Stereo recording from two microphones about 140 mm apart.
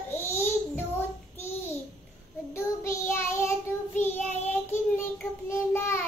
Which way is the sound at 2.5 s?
20° left (ahead or behind).